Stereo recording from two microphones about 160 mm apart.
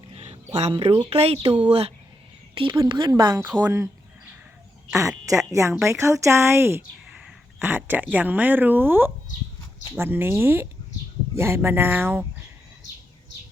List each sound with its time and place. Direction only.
0.1 s a sound: 40° right (ahead or behind)
1.1 s a woman's voice: 40° right (ahead or behind); by 3.8 s 20° right (ahead or behind)
4.9 s a woman's voice: 20° right (ahead or behind)